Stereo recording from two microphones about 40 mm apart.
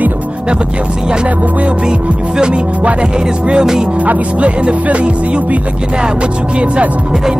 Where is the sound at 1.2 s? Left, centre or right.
Right.